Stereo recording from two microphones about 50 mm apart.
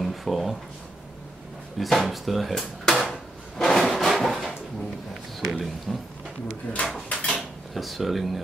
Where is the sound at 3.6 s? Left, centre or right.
Centre.